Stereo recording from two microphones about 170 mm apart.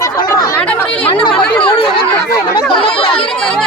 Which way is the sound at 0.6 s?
5° left (ahead or behind).